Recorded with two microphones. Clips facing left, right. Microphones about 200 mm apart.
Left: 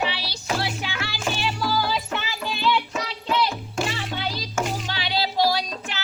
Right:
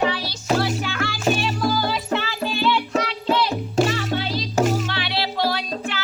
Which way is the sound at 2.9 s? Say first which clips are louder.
Right 4 dB; 35° right (ahead or behind).